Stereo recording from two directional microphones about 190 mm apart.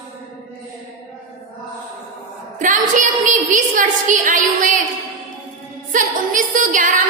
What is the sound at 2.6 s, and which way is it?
A woman's voice, 40° right (ahead or behind).